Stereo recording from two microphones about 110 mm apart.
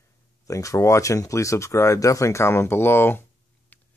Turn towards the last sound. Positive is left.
turn(degrees=20)  # may be behind; listen again after turning